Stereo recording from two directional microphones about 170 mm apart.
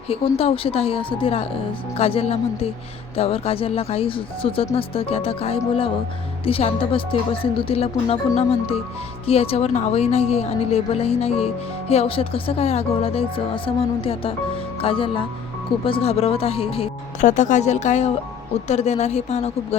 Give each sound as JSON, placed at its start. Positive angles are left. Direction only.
{"t": 0.1, "sound": "a woman's voice", "side_deg": 35}
{"t": 17.2, "sound": "a woman's voice", "side_deg": 45}